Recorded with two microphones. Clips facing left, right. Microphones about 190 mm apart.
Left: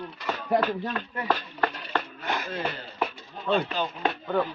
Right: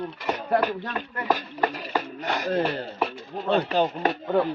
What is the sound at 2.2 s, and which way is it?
Speech, 15° right (ahead or behind).